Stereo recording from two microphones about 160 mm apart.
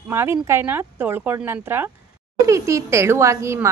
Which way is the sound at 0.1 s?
15° right (ahead or behind).